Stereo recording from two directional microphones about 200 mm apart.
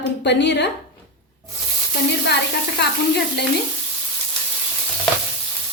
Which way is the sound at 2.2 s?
55° left (ahead or behind).